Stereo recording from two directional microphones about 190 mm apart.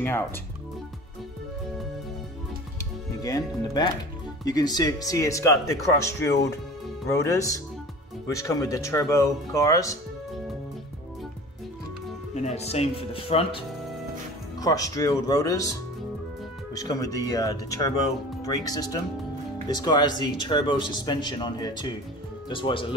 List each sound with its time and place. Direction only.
3.2 s speech: 20° left (ahead or behind)
12.4 s speech: 35° left (ahead or behind)
14.6 s speech: 20° left (ahead or behind)